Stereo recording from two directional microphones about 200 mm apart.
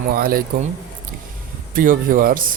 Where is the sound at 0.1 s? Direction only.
45° right (ahead or behind).